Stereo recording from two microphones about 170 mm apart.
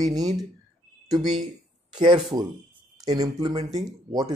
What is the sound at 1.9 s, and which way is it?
Speech, 25° right (ahead or behind).